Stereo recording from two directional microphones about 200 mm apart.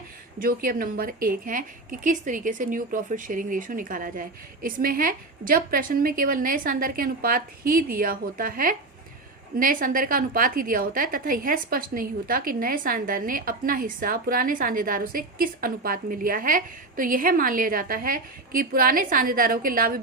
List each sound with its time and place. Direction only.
0.3 s a woman's voice: 45° right (ahead or behind)